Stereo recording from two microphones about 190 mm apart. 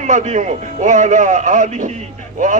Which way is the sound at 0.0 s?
40° right (ahead or behind).